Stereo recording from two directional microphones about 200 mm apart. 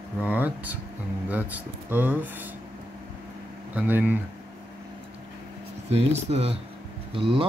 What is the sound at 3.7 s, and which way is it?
Speech, 10° right (ahead or behind).